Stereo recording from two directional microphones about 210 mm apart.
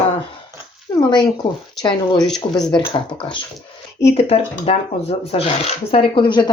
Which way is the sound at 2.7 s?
25° left (ahead or behind).